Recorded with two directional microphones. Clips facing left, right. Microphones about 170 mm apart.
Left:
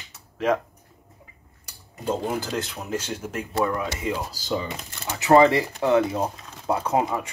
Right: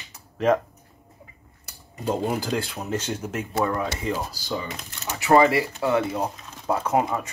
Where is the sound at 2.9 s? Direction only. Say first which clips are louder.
Right 1 dB; 10° left (ahead or behind).